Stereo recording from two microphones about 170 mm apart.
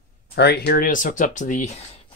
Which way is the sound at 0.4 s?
70° left (ahead or behind).